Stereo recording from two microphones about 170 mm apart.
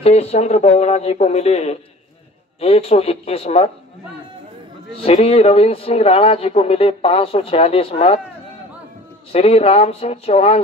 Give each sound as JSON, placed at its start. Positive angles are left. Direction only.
{"t": 0.0, "sound": "a man's voice", "side_deg": 40}
{"t": 5.0, "sound": "a man's voice", "side_deg": 35}
{"t": 9.3, "sound": "a man's voice", "side_deg": 35}